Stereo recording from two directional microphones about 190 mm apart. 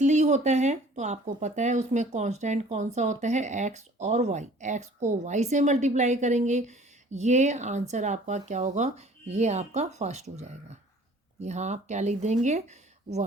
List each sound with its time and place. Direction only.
0.0 s speech: 40° right (ahead or behind)